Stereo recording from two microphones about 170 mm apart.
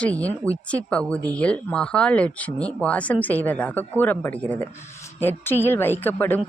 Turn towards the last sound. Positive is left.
turn(degrees=10)  # may be behind; listen again after turning